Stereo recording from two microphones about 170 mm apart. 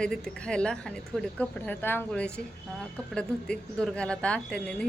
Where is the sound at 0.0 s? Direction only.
5° left (ahead or behind).